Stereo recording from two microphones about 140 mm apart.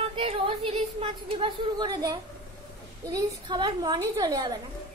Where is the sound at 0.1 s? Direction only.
45° right (ahead or behind).